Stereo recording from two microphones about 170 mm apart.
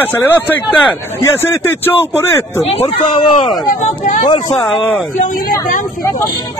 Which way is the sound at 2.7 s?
35° left (ahead or behind).